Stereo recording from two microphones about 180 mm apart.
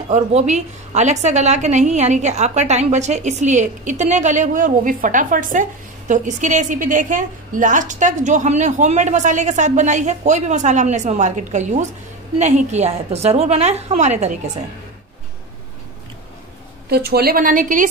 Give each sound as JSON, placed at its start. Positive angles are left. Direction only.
{"t": 0.1, "sound": "a woman's voice", "side_deg": -40}
{"t": 16.9, "sound": "a woman's voice", "side_deg": -60}